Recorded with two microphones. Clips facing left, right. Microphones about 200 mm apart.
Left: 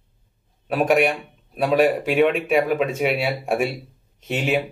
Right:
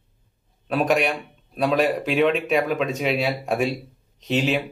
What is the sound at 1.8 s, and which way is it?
Speech, 50° left (ahead or behind).